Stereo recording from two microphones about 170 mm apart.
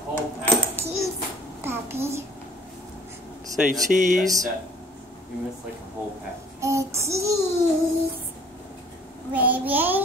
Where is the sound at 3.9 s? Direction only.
55° right (ahead or behind).